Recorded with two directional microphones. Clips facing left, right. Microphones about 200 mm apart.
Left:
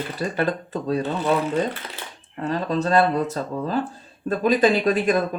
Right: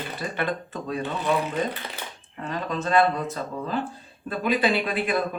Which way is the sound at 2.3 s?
40° left (ahead or behind).